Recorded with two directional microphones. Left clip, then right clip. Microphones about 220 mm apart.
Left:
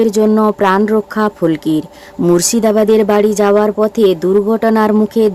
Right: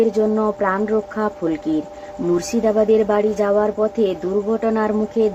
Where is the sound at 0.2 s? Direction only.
55° left (ahead or behind).